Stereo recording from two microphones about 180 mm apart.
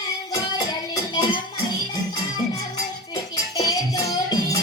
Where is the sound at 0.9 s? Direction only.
25° left (ahead or behind).